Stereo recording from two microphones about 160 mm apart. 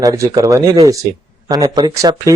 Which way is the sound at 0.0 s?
20° right (ahead or behind).